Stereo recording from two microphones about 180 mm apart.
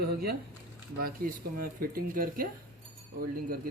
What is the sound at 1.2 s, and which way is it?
A man's voice, 55° right (ahead or behind).